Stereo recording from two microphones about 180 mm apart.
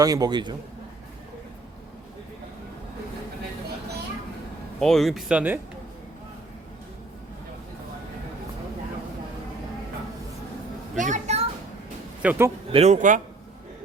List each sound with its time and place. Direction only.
0.0 s a man's voice: 20° right (ahead or behind)
4.8 s speech: centre (ahead or behind)
10.9 s a child's voice: 45° right (ahead or behind)
12.2 s speech: 10° right (ahead or behind)
12.7 s a man's voice: 40° right (ahead or behind)